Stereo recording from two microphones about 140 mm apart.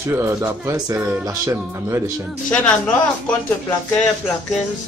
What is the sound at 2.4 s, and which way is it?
Speech, 10° left (ahead or behind).